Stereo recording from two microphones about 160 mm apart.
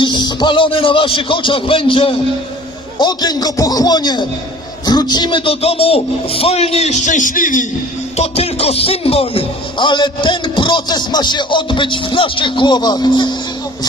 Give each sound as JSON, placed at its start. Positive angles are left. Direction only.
{"t": 0.0, "sound": "speech", "side_deg": 30}
{"t": 8.1, "sound": "speech", "side_deg": 40}